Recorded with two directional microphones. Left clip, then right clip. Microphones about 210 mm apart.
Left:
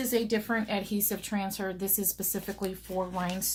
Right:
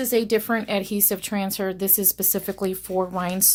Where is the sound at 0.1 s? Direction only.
55° right (ahead or behind).